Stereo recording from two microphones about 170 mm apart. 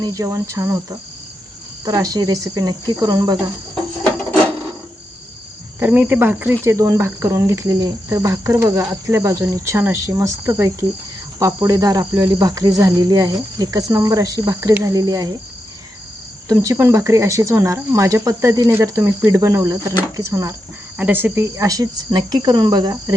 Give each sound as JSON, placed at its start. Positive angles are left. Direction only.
{"t": 0.0, "sound": "speech", "side_deg": -20}
{"t": 5.8, "sound": "cricket", "side_deg": -10}
{"t": 11.3, "sound": "speech", "side_deg": -20}
{"t": 16.5, "sound": "cricket", "side_deg": -20}
{"t": 21.0, "sound": "speech", "side_deg": -10}